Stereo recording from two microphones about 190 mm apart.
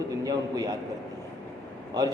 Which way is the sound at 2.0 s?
20° right (ahead or behind).